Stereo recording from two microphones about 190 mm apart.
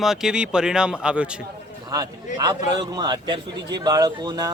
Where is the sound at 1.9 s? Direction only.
20° right (ahead or behind).